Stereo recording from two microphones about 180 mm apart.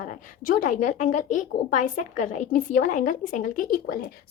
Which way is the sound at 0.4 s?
50° left (ahead or behind).